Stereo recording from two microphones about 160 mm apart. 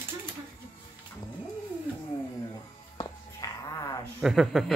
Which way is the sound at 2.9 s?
20° left (ahead or behind).